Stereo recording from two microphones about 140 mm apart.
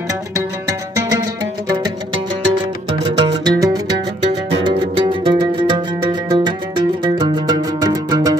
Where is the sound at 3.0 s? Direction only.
30° right (ahead or behind).